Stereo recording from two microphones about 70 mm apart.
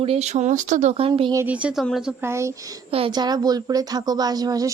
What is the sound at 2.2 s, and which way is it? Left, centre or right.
Speech, right.